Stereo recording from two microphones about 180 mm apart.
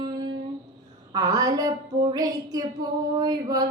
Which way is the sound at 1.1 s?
20° right (ahead or behind).